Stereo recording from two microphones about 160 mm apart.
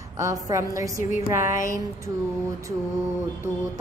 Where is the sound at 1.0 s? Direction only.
50° left (ahead or behind).